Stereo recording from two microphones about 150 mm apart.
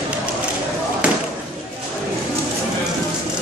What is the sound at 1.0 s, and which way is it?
Basketball bounce, 5° right (ahead or behind).